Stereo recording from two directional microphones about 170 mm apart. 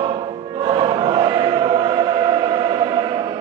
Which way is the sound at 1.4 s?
30° right (ahead or behind).